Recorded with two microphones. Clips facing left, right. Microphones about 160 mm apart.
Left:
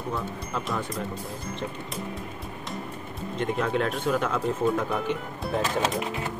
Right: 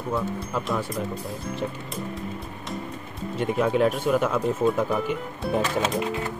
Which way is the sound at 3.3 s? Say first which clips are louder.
Right 4 dB; 10° right (ahead or behind).